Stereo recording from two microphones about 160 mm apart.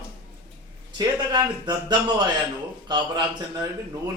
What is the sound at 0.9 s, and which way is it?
A man's voice, 25° right (ahead or behind).